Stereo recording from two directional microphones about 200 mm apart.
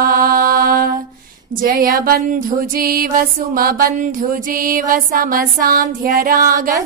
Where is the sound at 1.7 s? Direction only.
45° right (ahead or behind).